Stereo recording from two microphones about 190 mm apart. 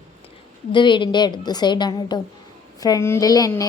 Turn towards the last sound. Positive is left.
turn(degrees=20)  # may be behind; listen again after turning